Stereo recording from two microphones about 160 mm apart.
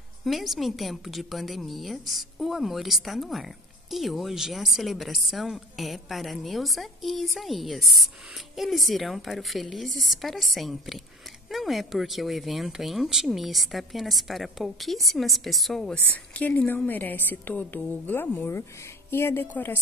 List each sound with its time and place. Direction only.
0.2 s a woman's voice: centre (ahead or behind)